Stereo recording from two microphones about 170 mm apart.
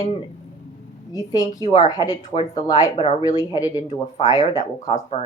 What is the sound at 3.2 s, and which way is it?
Speech, 20° left (ahead or behind).